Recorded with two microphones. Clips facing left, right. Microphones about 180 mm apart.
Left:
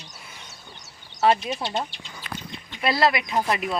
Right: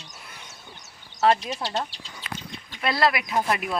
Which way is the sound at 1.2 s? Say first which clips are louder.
Left 1 dB; centre (ahead or behind).